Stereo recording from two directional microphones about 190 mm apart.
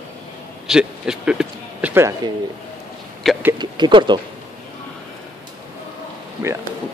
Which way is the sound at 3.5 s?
20° right (ahead or behind).